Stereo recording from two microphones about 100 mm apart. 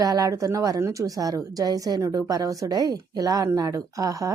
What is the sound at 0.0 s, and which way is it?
A woman's voice, 35° right (ahead or behind).